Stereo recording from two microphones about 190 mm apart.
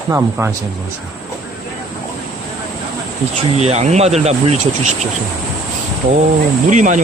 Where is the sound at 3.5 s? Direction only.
35° right (ahead or behind).